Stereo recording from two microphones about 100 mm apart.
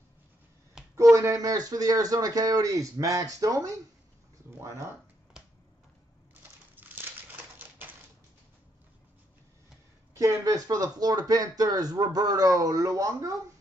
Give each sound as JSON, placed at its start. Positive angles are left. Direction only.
{"t": 0.9, "sound": "speech", "side_deg": -30}
{"t": 4.5, "sound": "a sound", "side_deg": -25}
{"t": 6.7, "sound": "crumpling", "side_deg": -20}
{"t": 10.1, "sound": "speech", "side_deg": -35}